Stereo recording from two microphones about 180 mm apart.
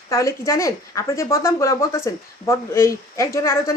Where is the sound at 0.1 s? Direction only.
15° left (ahead or behind).